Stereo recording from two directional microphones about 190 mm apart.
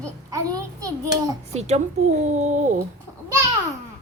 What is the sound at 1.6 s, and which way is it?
A woman's voice, 35° right (ahead or behind).